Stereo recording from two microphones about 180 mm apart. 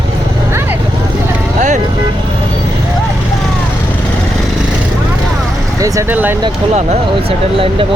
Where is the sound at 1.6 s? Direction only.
45° right (ahead or behind).